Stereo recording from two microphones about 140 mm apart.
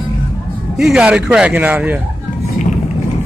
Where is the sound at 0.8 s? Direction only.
5° right (ahead or behind).